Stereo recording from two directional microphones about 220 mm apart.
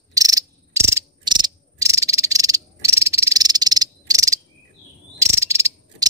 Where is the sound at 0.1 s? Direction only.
15° right (ahead or behind).